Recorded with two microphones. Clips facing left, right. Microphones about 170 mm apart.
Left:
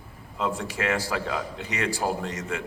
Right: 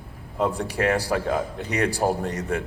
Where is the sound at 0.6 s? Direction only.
35° right (ahead or behind).